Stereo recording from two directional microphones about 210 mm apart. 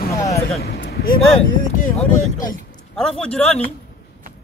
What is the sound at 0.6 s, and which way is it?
Speech, 45° left (ahead or behind).